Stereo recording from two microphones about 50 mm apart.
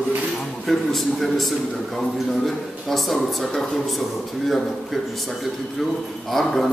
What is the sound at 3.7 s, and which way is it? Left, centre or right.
A man's voice, centre.